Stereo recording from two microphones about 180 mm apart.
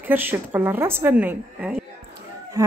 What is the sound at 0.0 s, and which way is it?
Speech, 10° right (ahead or behind).